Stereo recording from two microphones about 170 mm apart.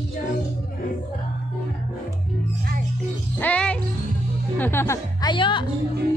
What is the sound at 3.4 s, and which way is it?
Music, 5° left (ahead or behind).